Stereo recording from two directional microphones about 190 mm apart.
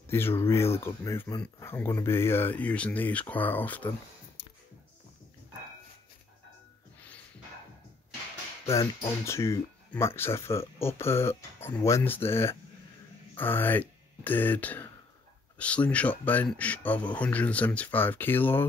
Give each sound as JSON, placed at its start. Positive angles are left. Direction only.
{"t": 0.0, "sound": "speech", "side_deg": 10}
{"t": 4.4, "sound": "music", "side_deg": 30}
{"t": 8.6, "sound": "speech", "side_deg": 15}